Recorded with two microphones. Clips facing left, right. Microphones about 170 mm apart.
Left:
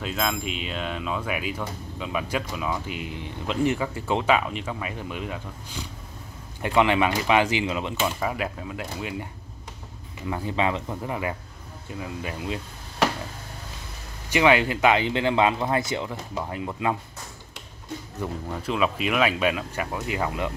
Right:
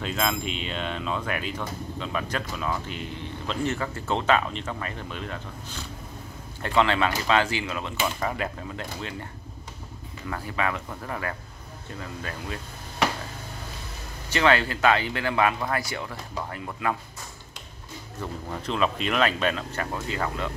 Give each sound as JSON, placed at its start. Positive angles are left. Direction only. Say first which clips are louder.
{"t": 0.0, "sound": "speech", "louder": "even", "side_deg": 0}
{"t": 8.0, "sound": "speech", "louder": "right 1 dB", "side_deg": 5}
{"t": 10.2, "sound": "speech", "louder": "left 4 dB", "side_deg": 20}
{"t": 14.3, "sound": "speech", "louder": "left 3 dB", "side_deg": 15}
{"t": 18.2, "sound": "speech", "louder": "left 2 dB", "side_deg": 5}